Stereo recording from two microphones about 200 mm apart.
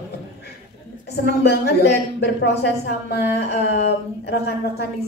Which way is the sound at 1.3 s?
55° left (ahead or behind).